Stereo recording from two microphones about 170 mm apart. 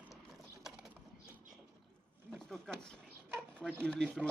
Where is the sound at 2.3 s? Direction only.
Centre (ahead or behind).